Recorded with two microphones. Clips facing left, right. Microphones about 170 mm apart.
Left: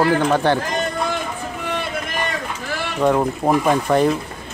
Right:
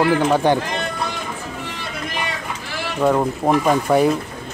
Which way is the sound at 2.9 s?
5° right (ahead or behind).